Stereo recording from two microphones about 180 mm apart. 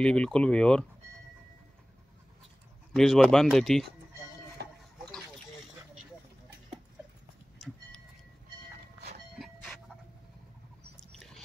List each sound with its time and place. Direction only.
0.0 s speech: 5° left (ahead or behind)
2.9 s speech: centre (ahead or behind)
4.6 s a sound: 65° right (ahead or behind)
9.3 s train: centre (ahead or behind)